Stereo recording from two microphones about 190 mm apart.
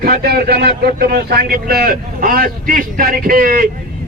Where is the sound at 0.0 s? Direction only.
55° right (ahead or behind).